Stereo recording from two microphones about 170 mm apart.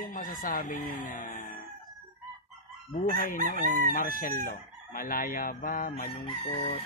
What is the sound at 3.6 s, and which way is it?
Chicken, 55° left (ahead or behind).